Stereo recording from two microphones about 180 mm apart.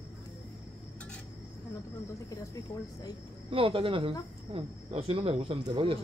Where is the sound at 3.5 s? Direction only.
30° right (ahead or behind).